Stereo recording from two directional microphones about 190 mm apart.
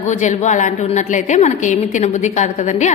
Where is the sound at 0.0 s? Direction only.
40° left (ahead or behind).